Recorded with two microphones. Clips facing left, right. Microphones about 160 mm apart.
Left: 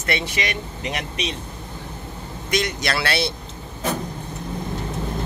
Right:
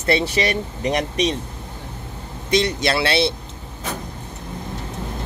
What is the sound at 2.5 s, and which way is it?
Speech, 30° right (ahead or behind).